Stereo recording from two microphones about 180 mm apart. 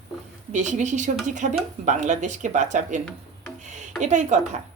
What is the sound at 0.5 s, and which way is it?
A woman's voice, 40° right (ahead or behind).